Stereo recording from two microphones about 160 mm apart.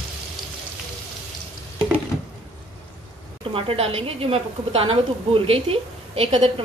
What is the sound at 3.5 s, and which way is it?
A woman's voice, 35° right (ahead or behind).